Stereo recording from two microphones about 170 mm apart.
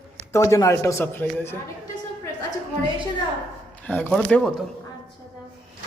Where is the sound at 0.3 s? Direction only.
20° left (ahead or behind).